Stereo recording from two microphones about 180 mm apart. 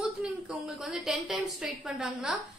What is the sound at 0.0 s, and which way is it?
A woman's voice, 5° right (ahead or behind).